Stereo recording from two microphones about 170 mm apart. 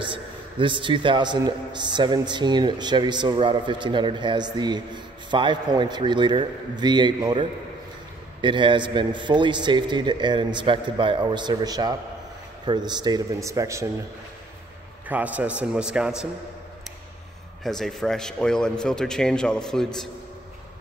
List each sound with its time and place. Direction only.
0.0 s a man's voice: 30° right (ahead or behind)
15.0 s a man's voice: 10° right (ahead or behind)
17.6 s a man's voice: centre (ahead or behind)